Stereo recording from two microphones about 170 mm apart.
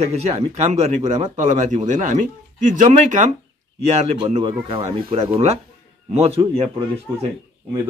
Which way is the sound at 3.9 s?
35° right (ahead or behind).